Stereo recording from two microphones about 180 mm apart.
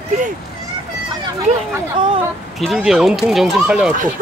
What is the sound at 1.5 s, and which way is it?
Speech, 40° right (ahead or behind).